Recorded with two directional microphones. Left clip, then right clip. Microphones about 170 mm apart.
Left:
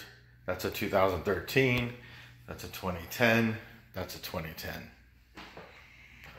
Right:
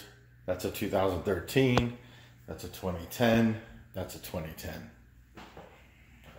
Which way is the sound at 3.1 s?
30° right (ahead or behind).